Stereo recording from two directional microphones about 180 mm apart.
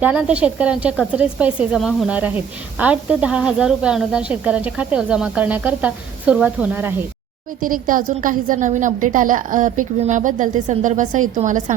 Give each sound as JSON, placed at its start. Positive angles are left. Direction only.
{"t": 0.0, "sound": "a woman's voice", "side_deg": -5}
{"t": 7.6, "sound": "a woman's voice", "side_deg": -50}